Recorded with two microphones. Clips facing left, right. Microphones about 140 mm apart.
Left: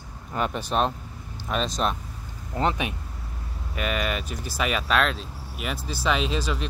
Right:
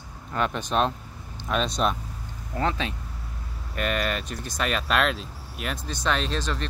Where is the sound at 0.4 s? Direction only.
5° left (ahead or behind).